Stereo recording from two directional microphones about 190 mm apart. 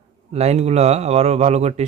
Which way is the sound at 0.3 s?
35° right (ahead or behind).